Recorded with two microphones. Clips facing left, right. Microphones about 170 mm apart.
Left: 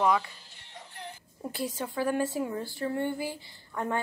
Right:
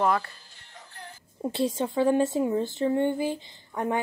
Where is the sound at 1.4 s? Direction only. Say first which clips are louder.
Right 7 dB; 25° right (ahead or behind).